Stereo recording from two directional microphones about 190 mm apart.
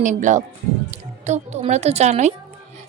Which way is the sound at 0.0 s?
40° right (ahead or behind).